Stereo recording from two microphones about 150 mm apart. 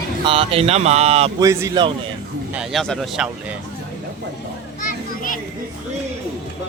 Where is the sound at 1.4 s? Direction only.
20° right (ahead or behind).